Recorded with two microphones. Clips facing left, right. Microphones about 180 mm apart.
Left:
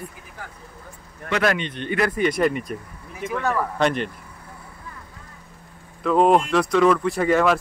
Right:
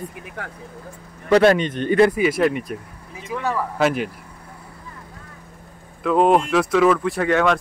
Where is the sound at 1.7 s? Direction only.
45° right (ahead or behind).